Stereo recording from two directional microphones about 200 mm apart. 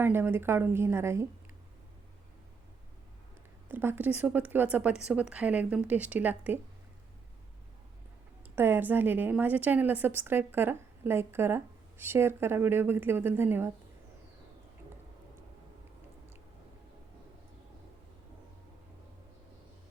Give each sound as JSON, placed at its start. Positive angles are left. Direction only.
{"t": 0.0, "sound": "a woman's voice", "side_deg": -10}
{"t": 3.7, "sound": "a woman's voice", "side_deg": -10}
{"t": 8.5, "sound": "a woman's voice", "side_deg": -10}